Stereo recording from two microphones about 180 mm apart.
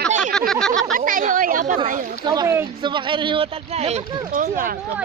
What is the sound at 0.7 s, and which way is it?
Speech, 50° right (ahead or behind).